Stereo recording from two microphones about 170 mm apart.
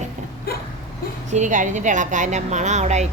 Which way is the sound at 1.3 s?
45° right (ahead or behind).